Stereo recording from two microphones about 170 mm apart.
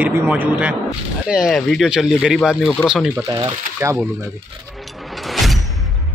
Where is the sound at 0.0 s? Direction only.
10° right (ahead or behind).